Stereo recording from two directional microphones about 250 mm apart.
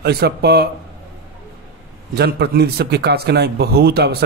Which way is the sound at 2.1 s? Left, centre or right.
Right.